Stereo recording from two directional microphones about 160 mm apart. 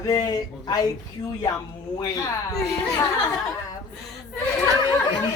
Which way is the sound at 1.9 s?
20° left (ahead or behind).